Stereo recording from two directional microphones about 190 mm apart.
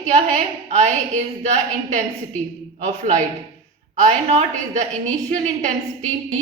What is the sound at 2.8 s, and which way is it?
Speech, 35° right (ahead or behind).